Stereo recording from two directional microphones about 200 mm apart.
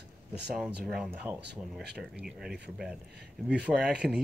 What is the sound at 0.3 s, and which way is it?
Speech, 5° right (ahead or behind).